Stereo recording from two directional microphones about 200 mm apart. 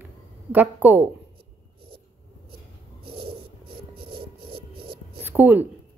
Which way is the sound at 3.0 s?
50° right (ahead or behind).